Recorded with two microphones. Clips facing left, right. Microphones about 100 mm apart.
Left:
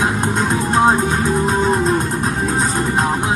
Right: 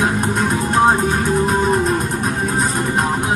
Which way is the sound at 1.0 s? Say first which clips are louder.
Even; 30° left (ahead or behind).